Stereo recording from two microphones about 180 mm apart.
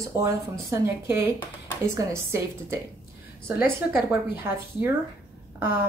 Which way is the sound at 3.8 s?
10° right (ahead or behind).